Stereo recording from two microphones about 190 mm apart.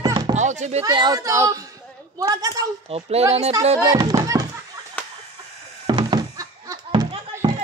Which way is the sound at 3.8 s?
20° right (ahead or behind).